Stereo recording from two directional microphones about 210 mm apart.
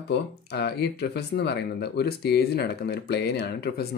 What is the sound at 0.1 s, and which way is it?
Speech, 55° left (ahead or behind).